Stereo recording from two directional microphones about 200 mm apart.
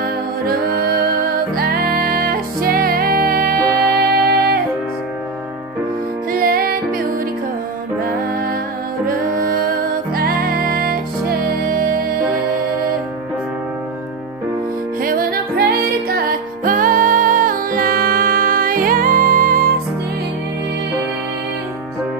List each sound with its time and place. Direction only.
0.0 s music: 50° right (ahead or behind)
6.3 s music: 45° right (ahead or behind)
8.0 s music: 45° right (ahead or behind)
15.0 s music: 45° right (ahead or behind)